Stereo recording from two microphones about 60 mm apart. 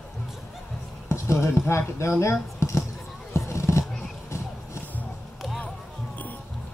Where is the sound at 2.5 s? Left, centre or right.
Left.